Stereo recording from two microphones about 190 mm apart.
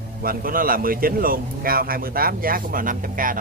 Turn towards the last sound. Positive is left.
turn(degrees=-45)  # may be behind; listen again after turning